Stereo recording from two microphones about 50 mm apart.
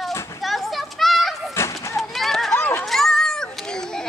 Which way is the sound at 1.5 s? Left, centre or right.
Left.